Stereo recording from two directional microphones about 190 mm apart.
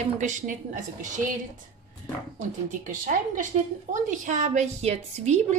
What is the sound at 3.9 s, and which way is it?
A woman's voice, 40° right (ahead or behind).